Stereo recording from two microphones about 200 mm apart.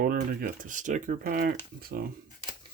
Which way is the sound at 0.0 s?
45° right (ahead or behind).